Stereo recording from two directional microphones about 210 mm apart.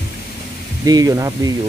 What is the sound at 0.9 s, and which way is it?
Speech, 15° right (ahead or behind).